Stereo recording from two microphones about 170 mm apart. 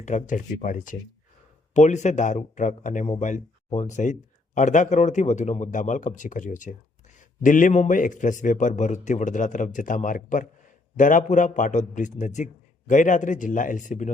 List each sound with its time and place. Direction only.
0.0 s speech: 45° left (ahead or behind)